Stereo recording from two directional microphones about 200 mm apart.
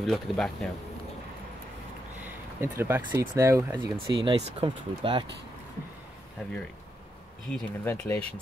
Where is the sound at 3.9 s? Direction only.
25° right (ahead or behind).